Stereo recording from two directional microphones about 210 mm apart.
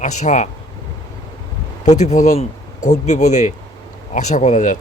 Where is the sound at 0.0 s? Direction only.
35° left (ahead or behind).